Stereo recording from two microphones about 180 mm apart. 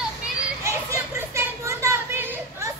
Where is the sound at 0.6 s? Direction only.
15° right (ahead or behind).